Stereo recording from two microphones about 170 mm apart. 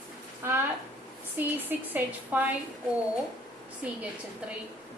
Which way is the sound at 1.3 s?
10° right (ahead or behind).